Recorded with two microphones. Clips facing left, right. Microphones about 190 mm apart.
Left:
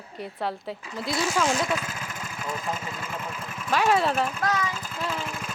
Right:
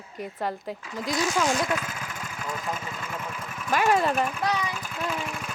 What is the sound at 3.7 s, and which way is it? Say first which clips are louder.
Speech: even; centre (ahead or behind).